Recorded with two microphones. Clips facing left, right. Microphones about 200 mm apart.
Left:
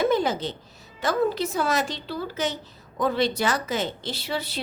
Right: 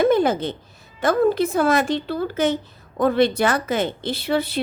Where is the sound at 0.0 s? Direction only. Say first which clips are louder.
Right 5 dB; 55° right (ahead or behind).